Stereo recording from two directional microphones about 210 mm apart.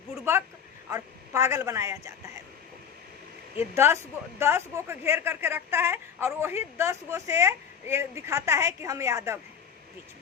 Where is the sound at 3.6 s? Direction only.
10° right (ahead or behind).